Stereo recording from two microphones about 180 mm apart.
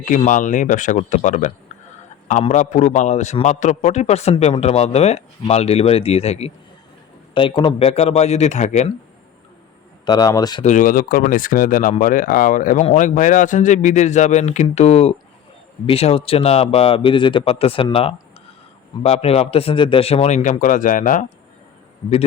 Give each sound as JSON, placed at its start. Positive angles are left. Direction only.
{"t": 0.0, "sound": "speech", "side_deg": 45}
{"t": 10.1, "sound": "speech", "side_deg": 20}
{"t": 10.6, "sound": "speech", "side_deg": 45}